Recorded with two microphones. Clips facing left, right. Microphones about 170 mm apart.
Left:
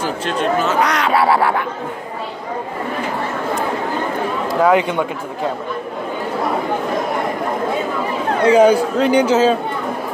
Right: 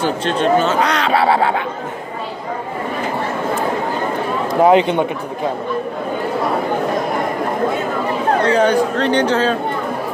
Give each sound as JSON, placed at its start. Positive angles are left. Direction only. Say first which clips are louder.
{"t": 0.0, "sound": "speech", "louder": "right 3 dB", "side_deg": -30}
{"t": 4.5, "sound": "speech", "louder": "right 3 dB", "side_deg": -25}
{"t": 8.5, "sound": "speech", "louder": "left 6 dB", "side_deg": 10}